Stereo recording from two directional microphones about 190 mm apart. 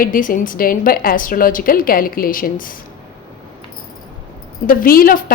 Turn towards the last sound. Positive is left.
turn(degrees=50)  # may be behind; listen again after turning